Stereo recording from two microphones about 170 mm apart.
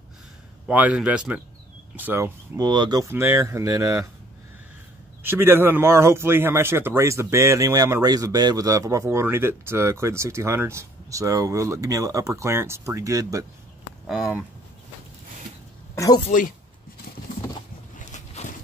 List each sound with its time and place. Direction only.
0.7 s speech: 5° right (ahead or behind)
5.2 s speech: 15° right (ahead or behind)
14.0 s speech: 5° right (ahead or behind)
15.9 s a sound: 20° left (ahead or behind)
16.3 s speech: 50° left (ahead or behind)
17.9 s boat: 45° left (ahead or behind)